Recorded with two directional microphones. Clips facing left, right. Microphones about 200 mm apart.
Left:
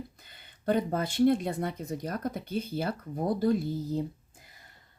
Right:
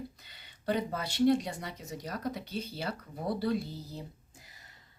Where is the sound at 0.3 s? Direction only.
50° left (ahead or behind).